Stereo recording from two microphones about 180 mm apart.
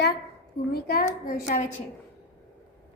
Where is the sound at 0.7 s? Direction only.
50° left (ahead or behind).